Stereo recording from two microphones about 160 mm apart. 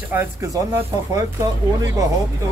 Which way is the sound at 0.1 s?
15° right (ahead or behind).